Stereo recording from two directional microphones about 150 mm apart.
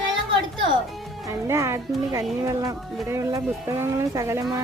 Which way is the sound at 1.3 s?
20° right (ahead or behind).